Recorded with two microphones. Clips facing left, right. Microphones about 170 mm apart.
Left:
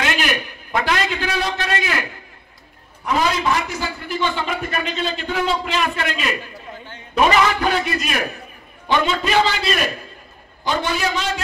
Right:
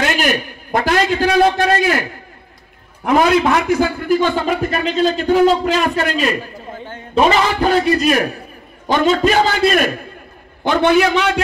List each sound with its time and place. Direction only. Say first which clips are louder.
0.0 s a man's voice: right 4 dB; 45° right (ahead or behind)
3.0 s a man's voice: right 7 dB; 55° right (ahead or behind)